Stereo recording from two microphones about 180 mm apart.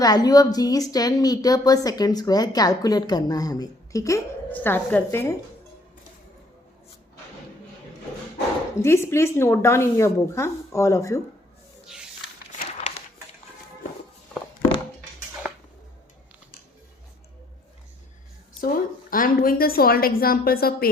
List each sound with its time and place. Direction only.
0.0 s a woman's voice: 20° left (ahead or behind)
8.8 s a woman's voice: 15° left (ahead or behind)
18.6 s a woman's voice: 50° left (ahead or behind)